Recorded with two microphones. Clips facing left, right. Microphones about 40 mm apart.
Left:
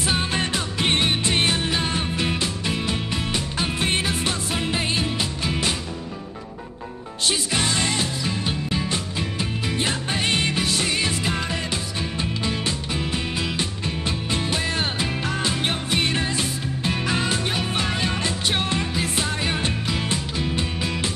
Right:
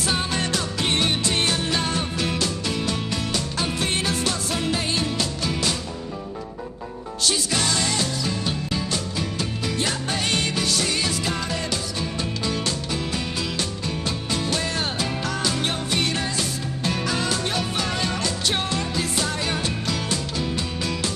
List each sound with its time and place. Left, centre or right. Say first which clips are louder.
0.0 s music: left 1 dB; left
7.2 s music: even; left